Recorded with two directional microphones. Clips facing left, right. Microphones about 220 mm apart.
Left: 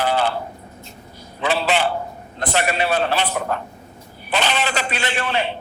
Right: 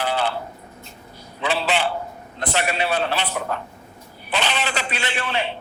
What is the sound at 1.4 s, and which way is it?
A man's voice, 45° left (ahead or behind).